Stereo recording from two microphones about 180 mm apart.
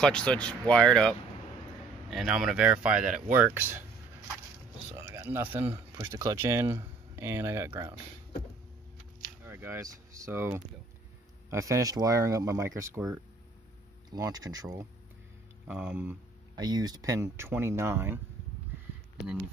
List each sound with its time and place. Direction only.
0.0 s speech: 5° left (ahead or behind); by 3.8 s 10° right (ahead or behind)
4.9 s speech: 15° right (ahead or behind)
9.4 s speech: 15° right (ahead or behind)
15.6 s speech: 10° right (ahead or behind)
16.5 s speech: 20° right (ahead or behind)